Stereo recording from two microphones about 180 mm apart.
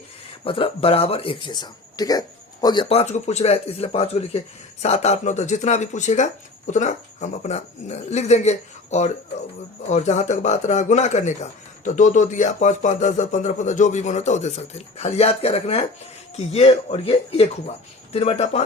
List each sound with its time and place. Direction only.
0.4 s speech: 30° left (ahead or behind)
2.9 s speech: 35° left (ahead or behind)